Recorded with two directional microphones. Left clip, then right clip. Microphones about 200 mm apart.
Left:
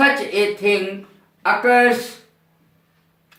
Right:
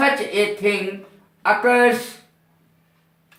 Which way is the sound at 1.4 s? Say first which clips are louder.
Left 1 dB; 25° right (ahead or behind).